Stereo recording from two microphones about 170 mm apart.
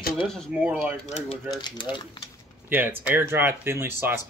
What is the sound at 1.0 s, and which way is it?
Speech, 40° left (ahead or behind).